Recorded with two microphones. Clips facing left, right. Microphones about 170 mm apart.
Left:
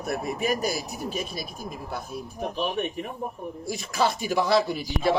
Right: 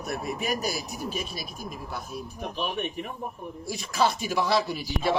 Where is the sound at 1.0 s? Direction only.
30° left (ahead or behind).